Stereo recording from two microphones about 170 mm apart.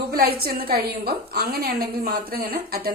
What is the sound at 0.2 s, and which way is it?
A woman's voice, 60° right (ahead or behind).